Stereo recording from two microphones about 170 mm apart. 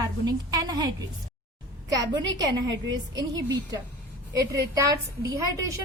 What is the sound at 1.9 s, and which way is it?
Speech, 20° right (ahead or behind).